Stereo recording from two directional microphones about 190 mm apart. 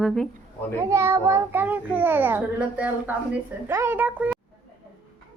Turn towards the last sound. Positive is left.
turn(degrees=-10)  # may be behind; listen again after turning